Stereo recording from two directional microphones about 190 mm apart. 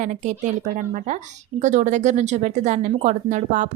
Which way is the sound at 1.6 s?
40° right (ahead or behind).